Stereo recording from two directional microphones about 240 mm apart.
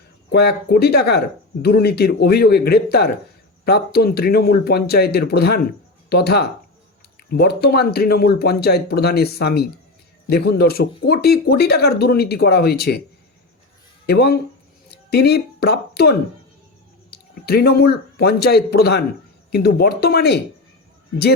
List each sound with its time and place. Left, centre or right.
0.3 s speech: left
14.1 s speech: left